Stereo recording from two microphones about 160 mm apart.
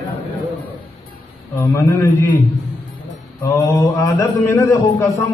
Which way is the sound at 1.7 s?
15° left (ahead or behind).